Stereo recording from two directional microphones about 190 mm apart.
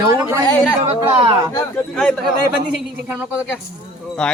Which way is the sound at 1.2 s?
25° right (ahead or behind).